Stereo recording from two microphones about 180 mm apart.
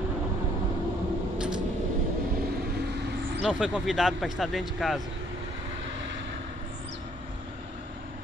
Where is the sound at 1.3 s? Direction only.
5° right (ahead or behind).